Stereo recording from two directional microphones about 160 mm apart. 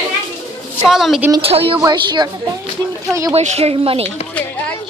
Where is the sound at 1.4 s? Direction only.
35° right (ahead or behind); by 3.3 s 20° right (ahead or behind).